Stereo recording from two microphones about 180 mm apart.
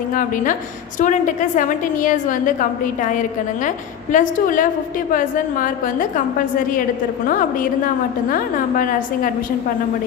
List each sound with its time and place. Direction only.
0.1 s a woman's voice: 50° left (ahead or behind)
7.3 s a woman's voice: 50° left (ahead or behind)